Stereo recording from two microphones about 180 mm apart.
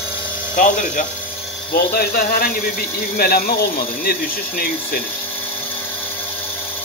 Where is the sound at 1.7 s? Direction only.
55° left (ahead or behind).